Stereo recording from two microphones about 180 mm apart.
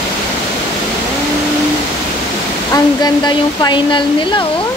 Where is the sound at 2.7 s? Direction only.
20° left (ahead or behind).